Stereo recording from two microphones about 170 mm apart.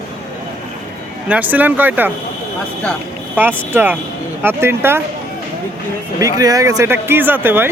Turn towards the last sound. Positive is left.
turn(degrees=-10)  # may be behind; listen again after turning